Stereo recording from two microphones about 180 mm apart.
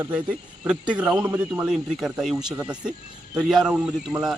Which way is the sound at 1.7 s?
5° right (ahead or behind).